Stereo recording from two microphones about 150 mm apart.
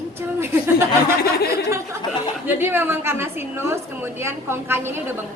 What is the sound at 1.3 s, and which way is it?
Speech, 90° left.